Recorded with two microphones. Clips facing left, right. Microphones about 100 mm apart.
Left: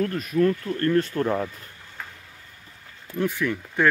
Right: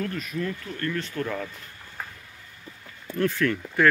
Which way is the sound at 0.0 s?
40° left (ahead or behind).